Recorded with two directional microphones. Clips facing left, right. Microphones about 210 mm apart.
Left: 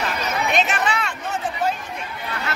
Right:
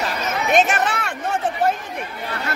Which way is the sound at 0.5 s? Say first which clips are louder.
Right 5 dB; 55° right (ahead or behind).